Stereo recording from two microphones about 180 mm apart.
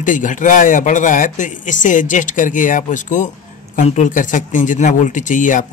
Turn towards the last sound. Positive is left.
turn(degrees=45)  # may be behind; listen again after turning